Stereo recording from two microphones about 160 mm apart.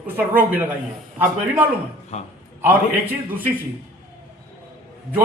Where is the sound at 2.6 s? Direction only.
10° right (ahead or behind).